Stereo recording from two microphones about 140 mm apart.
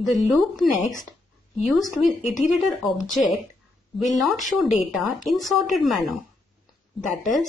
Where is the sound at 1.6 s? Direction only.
5° right (ahead or behind).